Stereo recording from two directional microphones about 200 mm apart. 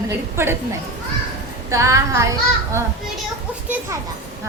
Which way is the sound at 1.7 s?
15° right (ahead or behind).